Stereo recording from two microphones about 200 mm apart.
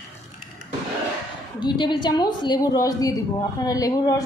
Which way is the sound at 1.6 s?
25° left (ahead or behind).